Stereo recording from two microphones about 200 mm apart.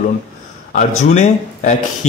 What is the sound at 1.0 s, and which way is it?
Speech, 35° left (ahead or behind).